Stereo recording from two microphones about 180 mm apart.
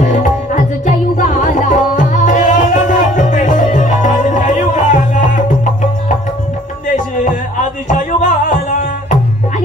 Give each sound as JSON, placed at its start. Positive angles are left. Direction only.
{"t": 0.0, "sound": "music", "side_deg": 45}
{"t": 7.9, "sound": "music", "side_deg": 45}